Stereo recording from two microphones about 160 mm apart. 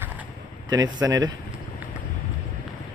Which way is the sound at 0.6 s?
25° right (ahead or behind).